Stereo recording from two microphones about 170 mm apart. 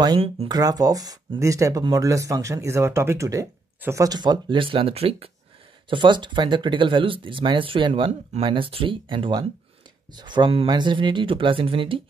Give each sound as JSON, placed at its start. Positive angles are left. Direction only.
{"t": 0.5, "sound": "speech", "side_deg": -20}